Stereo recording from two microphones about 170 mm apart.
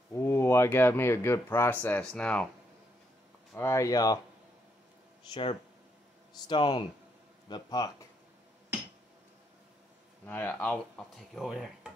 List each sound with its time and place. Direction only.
0.1 s speech: 15° left (ahead or behind)
3.5 s speech: 15° left (ahead or behind)
5.3 s speech: 30° left (ahead or behind)
10.2 s speech: 10° left (ahead or behind)